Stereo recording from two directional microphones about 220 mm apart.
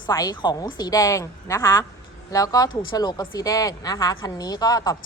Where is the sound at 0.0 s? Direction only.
15° left (ahead or behind).